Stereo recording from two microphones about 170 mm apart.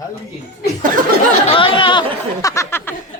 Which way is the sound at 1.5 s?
30° left (ahead or behind).